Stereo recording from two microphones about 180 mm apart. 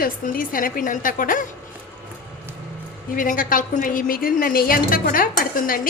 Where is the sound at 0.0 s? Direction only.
50° left (ahead or behind).